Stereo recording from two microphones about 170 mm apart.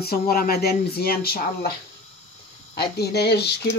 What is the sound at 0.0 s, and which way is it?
Speech, 60° left (ahead or behind).